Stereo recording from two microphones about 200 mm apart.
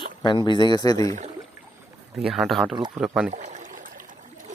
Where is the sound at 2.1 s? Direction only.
Centre (ahead or behind).